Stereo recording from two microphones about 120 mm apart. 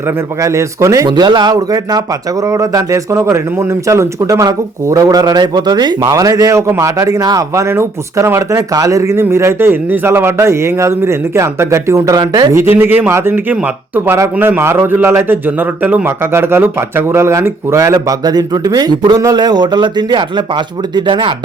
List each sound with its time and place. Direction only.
0.3 s speech: 25° right (ahead or behind)
1.0 s speech: 40° right (ahead or behind)